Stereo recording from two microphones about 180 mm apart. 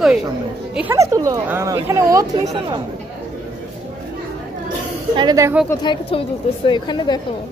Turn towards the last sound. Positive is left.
turn(degrees=25)  # may be behind; listen again after turning